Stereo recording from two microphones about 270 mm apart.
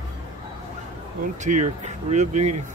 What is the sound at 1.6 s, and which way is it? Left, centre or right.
Speech, right.